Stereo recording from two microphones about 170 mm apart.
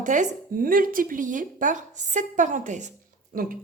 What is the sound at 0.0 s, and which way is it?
A woman's voice, 50° right (ahead or behind).